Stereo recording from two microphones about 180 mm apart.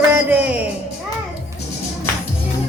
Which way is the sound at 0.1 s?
10° right (ahead or behind).